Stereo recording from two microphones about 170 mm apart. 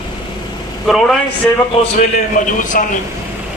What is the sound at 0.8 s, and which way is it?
Speech, centre (ahead or behind).